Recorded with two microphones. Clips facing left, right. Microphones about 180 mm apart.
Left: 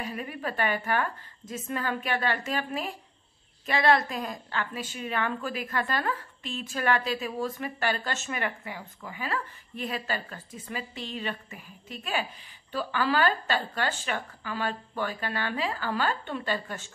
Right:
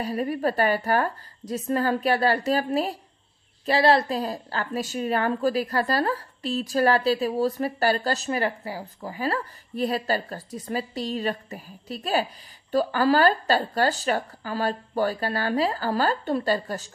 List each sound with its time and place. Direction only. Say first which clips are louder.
0.0 s a woman's voice: right 9 dB; 35° right (ahead or behind)